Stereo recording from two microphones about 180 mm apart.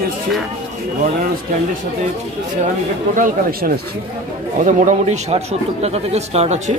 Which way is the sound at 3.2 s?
55° right (ahead or behind).